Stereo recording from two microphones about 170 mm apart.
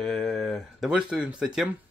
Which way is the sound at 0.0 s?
Centre (ahead or behind).